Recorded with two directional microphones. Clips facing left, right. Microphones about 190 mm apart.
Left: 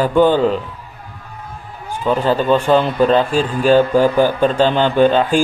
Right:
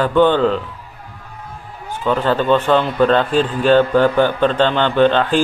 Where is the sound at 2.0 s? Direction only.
10° left (ahead or behind).